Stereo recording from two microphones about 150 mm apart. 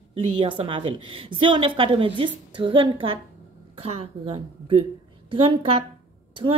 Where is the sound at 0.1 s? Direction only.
40° right (ahead or behind).